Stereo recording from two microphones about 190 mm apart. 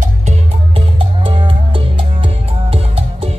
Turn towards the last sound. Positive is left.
turn(degrees=-30)  # may be behind; listen again after turning